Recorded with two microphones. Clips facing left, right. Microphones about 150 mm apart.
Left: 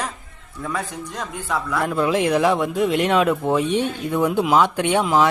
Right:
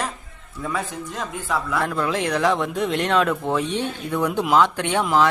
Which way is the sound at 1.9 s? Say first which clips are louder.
Left 8 dB; 15° left (ahead or behind).